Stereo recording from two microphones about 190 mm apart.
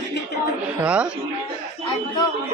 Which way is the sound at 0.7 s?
5° right (ahead or behind).